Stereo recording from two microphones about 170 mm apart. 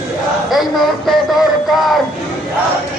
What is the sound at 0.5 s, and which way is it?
Speech, centre (ahead or behind).